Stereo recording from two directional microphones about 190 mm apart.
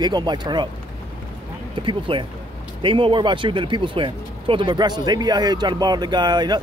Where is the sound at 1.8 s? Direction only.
25° right (ahead or behind).